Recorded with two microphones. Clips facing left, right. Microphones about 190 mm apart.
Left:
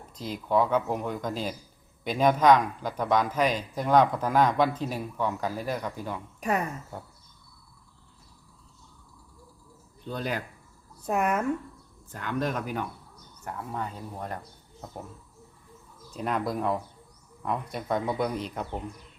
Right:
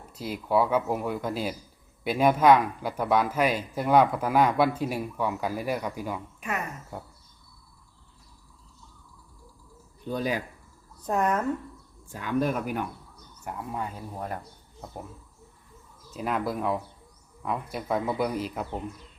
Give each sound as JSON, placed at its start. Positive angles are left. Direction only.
{"t": 0.1, "sound": "a man's voice", "side_deg": -10}
{"t": 6.4, "sound": "speech", "side_deg": 35}
{"t": 10.0, "sound": "a man's voice", "side_deg": -10}
{"t": 11.0, "sound": "speech", "side_deg": 10}
{"t": 12.0, "sound": "a man's voice", "side_deg": -10}
{"t": 16.1, "sound": "speech", "side_deg": -5}